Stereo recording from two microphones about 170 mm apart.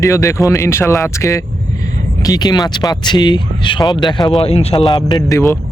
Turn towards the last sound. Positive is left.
turn(degrees=20)  # may be behind; listen again after turning